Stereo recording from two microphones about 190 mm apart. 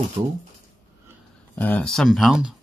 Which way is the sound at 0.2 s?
20° right (ahead or behind).